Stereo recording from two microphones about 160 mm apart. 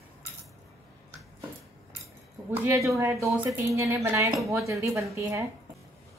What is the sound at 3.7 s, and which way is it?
A woman's voice, 20° right (ahead or behind).